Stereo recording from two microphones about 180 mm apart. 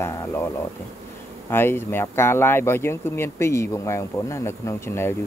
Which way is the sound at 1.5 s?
10° left (ahead or behind).